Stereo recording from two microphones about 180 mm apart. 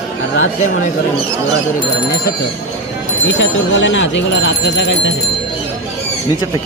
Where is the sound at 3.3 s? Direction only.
90° left.